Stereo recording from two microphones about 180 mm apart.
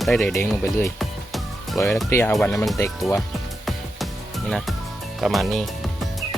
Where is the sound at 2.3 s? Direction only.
Centre (ahead or behind).